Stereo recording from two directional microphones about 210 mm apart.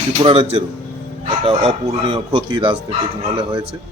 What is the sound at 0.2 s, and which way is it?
Speech, 25° right (ahead or behind).